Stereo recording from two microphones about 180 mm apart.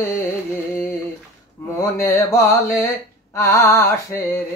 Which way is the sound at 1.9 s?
15° left (ahead or behind).